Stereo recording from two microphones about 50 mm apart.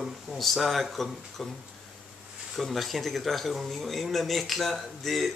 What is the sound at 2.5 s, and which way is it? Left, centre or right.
Speech, centre.